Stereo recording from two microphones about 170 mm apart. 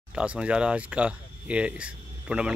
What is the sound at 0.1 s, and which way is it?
Speech, 5° right (ahead or behind).